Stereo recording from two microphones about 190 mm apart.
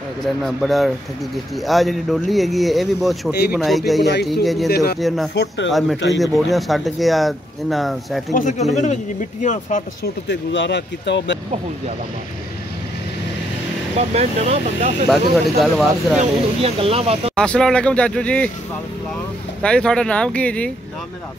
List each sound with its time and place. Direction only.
0.2 s speech: centre (ahead or behind)
4.0 s speech: 65° left (ahead or behind)
4.3 s speech: centre (ahead or behind)
4.6 s speech: 55° left (ahead or behind)
5.0 s speech: centre (ahead or behind)
5.3 s speech: 60° left (ahead or behind)
5.7 s speech: centre (ahead or behind)
8.4 s speech: 40° left (ahead or behind)
10.2 s speech: 70° left (ahead or behind)
13.9 s speech: 35° right (ahead or behind)
15.6 s speech: centre (ahead or behind)
16.2 s speech: 30° right (ahead or behind)
17.4 s speech: 5° left (ahead or behind)
19.6 s speech: 5° left (ahead or behind)